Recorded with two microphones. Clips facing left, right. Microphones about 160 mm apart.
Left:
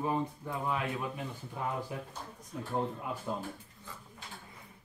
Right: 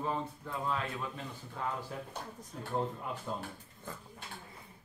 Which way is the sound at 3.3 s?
10° left (ahead or behind).